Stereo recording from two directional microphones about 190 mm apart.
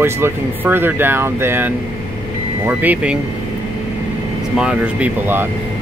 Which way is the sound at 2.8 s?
5° right (ahead or behind).